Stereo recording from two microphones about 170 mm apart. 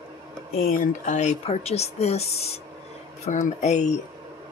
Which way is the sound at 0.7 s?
50° left (ahead or behind).